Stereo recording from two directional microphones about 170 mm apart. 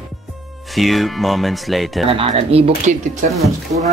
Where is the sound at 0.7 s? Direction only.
Centre (ahead or behind).